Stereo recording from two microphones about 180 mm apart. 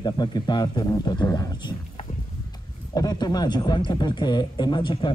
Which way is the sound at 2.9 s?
20° left (ahead or behind).